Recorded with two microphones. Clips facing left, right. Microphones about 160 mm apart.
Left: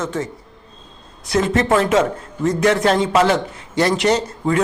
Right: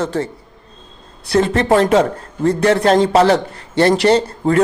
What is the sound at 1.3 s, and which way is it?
A man's voice, 30° right (ahead or behind).